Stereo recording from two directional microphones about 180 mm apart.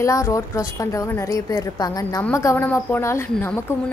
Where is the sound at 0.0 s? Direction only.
20° left (ahead or behind).